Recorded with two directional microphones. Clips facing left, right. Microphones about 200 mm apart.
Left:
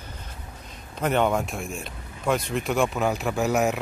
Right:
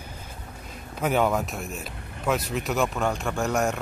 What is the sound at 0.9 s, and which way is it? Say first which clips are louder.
Speech: left 1 dB; 5° right (ahead or behind).